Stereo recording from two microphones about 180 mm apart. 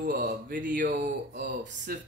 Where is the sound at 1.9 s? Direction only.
55° right (ahead or behind).